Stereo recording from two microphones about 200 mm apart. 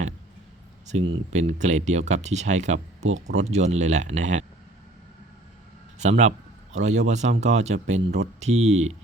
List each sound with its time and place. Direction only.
0.9 s speech: 35° right (ahead or behind)
6.0 s speech: 35° right (ahead or behind)